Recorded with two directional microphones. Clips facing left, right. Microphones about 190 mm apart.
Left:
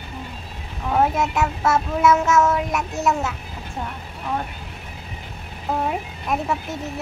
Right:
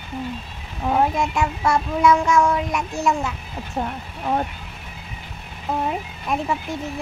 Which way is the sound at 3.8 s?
35° right (ahead or behind).